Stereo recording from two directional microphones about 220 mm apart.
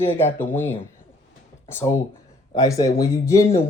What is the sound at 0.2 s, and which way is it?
Speech, 10° left (ahead or behind).